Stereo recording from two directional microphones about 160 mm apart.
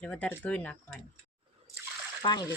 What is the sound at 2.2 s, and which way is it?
Speech, 25° left (ahead or behind).